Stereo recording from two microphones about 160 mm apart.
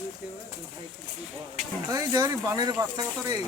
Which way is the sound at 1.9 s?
20° right (ahead or behind).